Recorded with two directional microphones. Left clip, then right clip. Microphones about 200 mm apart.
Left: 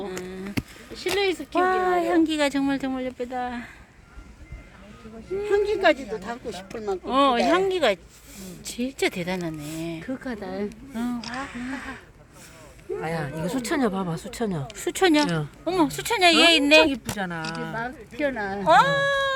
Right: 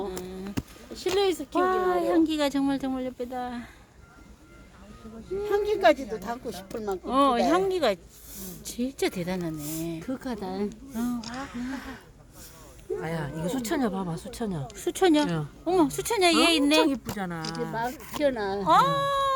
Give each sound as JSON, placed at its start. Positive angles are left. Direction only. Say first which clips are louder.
{"t": 1.2, "sound": "speech", "louder": "left 1 dB", "side_deg": -30}
{"t": 1.5, "sound": "speech", "louder": "left 4 dB", "side_deg": 0}
{"t": 5.4, "sound": "speech", "louder": "left 2 dB", "side_deg": -30}
{"t": 7.0, "sound": "speech", "louder": "left 2 dB", "side_deg": -5}
{"t": 10.0, "sound": "speech", "louder": "left 1 dB", "side_deg": -45}
{"t": 10.9, "sound": "speech", "louder": "left 4 dB", "side_deg": -5}
{"t": 13.0, "sound": "speech", "louder": "left 6 dB", "side_deg": 10}
{"t": 14.7, "sound": "speech", "louder": "left 2 dB", "side_deg": 0}
{"t": 17.7, "sound": "speech", "louder": "right 1 dB", "side_deg": -30}
{"t": 18.6, "sound": "speech", "louder": "left 4 dB", "side_deg": -10}